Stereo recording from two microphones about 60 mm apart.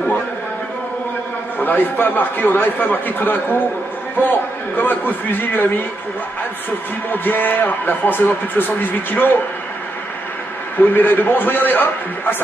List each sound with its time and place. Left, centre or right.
1.6 s speech: left
7.1 s speech: left
10.8 s speech: left